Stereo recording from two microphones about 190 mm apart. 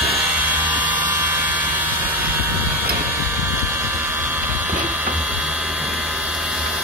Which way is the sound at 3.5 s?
10° right (ahead or behind).